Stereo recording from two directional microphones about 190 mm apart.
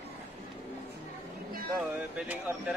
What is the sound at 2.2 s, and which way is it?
Speech, 5° right (ahead or behind).